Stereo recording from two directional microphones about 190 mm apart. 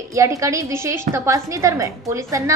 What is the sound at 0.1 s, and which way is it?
A woman's voice, 15° right (ahead or behind).